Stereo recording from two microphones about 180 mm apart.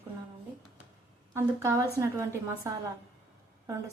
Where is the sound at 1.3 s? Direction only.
15° right (ahead or behind).